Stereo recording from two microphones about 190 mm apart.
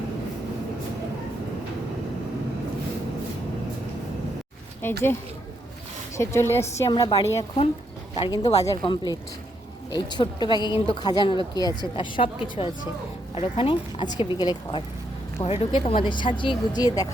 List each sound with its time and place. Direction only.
4.8 s a woman's voice: 15° left (ahead or behind)
6.1 s a woman's voice: 15° left (ahead or behind)
15.4 s a woman's voice: 15° left (ahead or behind)
15.7 s a woman's voice: 25° left (ahead or behind)